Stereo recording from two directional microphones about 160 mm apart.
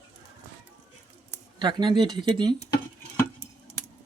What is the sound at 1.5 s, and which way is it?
Speech, 30° right (ahead or behind).